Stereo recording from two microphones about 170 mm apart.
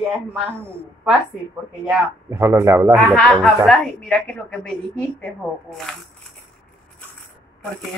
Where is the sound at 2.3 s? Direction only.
15° right (ahead or behind).